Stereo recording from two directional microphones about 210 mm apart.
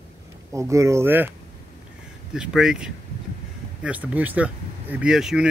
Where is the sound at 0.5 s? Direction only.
15° right (ahead or behind).